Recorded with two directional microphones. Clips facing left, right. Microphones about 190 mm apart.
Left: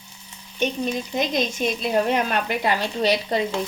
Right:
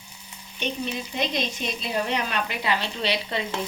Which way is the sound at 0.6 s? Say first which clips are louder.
Left 5 dB; 45° left (ahead or behind).